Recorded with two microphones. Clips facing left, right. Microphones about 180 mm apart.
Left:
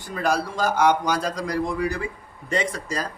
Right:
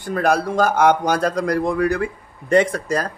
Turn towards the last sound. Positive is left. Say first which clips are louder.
# right 7 dB
turn(degrees=-55)  # may be behind; listen again after turning